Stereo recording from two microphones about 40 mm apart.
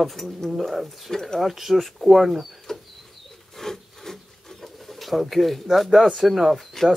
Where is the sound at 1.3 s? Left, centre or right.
Centre.